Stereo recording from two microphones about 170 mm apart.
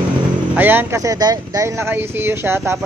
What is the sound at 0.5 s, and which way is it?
Speech, 10° right (ahead or behind).